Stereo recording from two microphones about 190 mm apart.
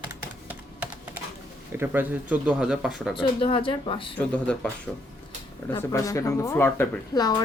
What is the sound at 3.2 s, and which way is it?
Speech, 30° left (ahead or behind).